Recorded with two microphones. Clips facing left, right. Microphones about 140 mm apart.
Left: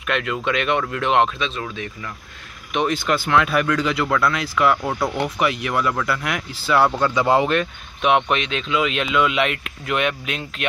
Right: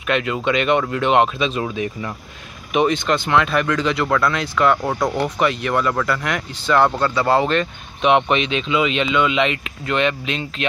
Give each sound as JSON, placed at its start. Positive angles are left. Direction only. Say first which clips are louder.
{"t": 0.0, "sound": "speech", "louder": "right 3 dB", "side_deg": 0}
{"t": 2.7, "sound": "speech", "louder": "right 3 dB", "side_deg": 0}
{"t": 4.8, "sound": "speech", "louder": "right 2 dB", "side_deg": -15}
{"t": 5.1, "sound": "speech", "louder": "right 2 dB", "side_deg": 5}